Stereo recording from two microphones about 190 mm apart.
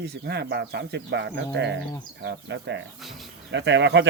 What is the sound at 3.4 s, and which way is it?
Speech, 65° right (ahead or behind).